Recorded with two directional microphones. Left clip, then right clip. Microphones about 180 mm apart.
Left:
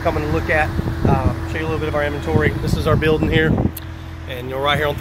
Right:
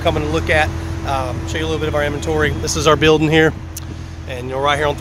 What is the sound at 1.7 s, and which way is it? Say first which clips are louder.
Speech: right 2 dB; 15° right (ahead or behind).